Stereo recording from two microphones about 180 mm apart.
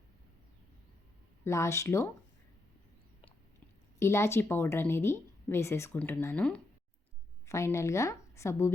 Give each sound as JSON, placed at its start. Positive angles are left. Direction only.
{"t": 1.5, "sound": "speech", "side_deg": 15}
{"t": 4.0, "sound": "a woman's voice", "side_deg": 15}